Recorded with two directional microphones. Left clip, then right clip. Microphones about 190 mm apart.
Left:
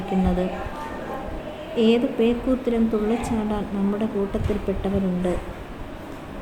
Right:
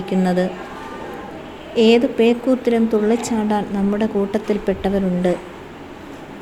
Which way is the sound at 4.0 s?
20° right (ahead or behind).